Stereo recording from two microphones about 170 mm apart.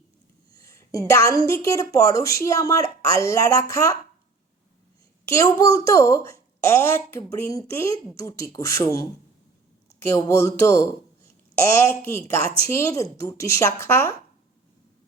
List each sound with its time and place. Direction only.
0.5 s a sound: 15° left (ahead or behind)
1.0 s a woman's voice: 20° left (ahead or behind)
5.2 s a woman's voice: 20° left (ahead or behind)